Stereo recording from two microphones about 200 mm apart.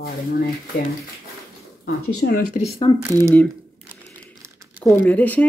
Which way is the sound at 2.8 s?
25° left (ahead or behind).